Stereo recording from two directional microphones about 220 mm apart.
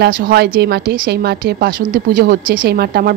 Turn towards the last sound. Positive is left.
turn(degrees=-45)  # may be behind; listen again after turning